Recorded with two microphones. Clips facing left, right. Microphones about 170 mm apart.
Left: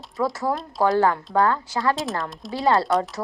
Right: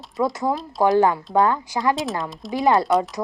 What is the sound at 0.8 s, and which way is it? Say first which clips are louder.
Speech: right 2 dB; 15° right (ahead or behind).